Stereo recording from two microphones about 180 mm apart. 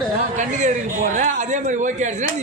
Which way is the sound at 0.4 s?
40° right (ahead or behind).